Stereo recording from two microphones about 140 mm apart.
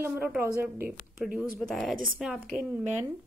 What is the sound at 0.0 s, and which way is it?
A woman's voice, 10° right (ahead or behind).